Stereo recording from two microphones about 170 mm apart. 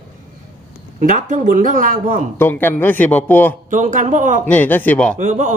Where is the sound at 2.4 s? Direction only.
10° left (ahead or behind).